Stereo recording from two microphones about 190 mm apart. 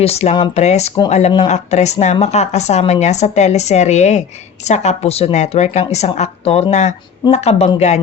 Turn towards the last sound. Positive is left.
turn(degrees=35)  # may be behind; listen again after turning